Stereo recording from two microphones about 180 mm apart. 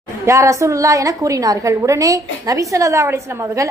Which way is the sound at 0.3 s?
15° right (ahead or behind).